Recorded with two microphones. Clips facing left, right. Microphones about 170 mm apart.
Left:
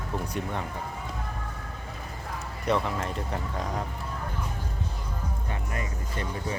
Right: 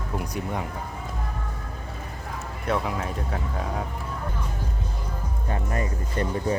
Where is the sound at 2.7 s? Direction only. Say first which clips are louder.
Even; 5° right (ahead or behind).